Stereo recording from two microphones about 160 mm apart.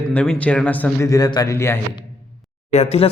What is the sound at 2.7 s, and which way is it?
Speech, 45° left (ahead or behind).